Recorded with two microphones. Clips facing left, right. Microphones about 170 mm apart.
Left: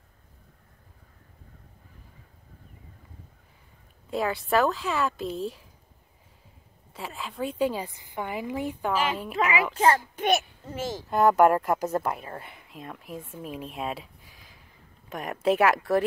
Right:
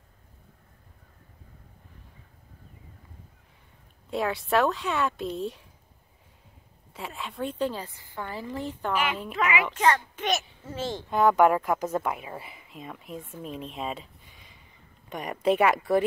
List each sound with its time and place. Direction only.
4.1 s speech: centre (ahead or behind)
6.9 s a woman's voice: centre (ahead or behind)
9.8 s a child's voice: 35° left (ahead or behind)
10.6 s a woman's voice: 10° left (ahead or behind)